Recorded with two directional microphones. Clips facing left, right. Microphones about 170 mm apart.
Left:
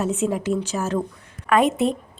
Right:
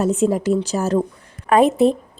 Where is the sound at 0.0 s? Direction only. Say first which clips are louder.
Right 5 dB; 40° right (ahead or behind).